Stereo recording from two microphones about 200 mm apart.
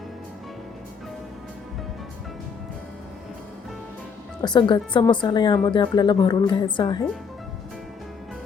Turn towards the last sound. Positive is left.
turn(degrees=25)  # may be behind; listen again after turning